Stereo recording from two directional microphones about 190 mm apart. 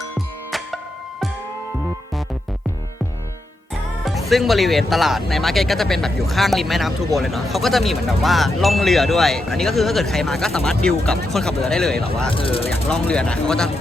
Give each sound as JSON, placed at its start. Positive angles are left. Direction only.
{"t": 4.0, "sound": "speech", "side_deg": 0}
{"t": 12.3, "sound": "speech", "side_deg": 30}
{"t": 12.9, "sound": "speech", "side_deg": 5}